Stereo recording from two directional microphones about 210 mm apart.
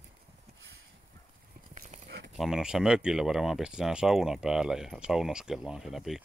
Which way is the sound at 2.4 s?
5° right (ahead or behind).